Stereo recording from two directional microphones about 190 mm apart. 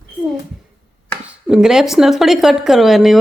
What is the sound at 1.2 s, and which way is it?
Speech, 5° right (ahead or behind).